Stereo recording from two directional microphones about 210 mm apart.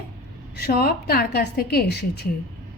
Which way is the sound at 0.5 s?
50° left (ahead or behind).